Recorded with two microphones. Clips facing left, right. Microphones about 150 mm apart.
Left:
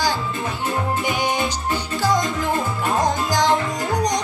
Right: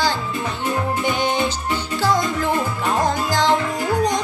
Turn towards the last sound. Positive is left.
turn(degrees=15)  # may be behind; listen again after turning